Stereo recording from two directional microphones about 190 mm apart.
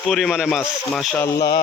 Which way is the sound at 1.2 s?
20° left (ahead or behind).